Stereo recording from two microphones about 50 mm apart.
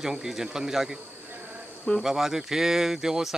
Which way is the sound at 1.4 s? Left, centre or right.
Right.